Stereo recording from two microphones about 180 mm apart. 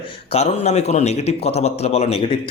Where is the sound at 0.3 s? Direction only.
35° left (ahead or behind).